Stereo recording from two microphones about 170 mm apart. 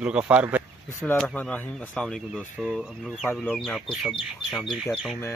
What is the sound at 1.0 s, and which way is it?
A man's voice, 15° left (ahead or behind).